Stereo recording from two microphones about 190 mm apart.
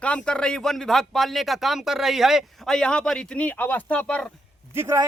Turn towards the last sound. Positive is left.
turn(degrees=-15)  # may be behind; listen again after turning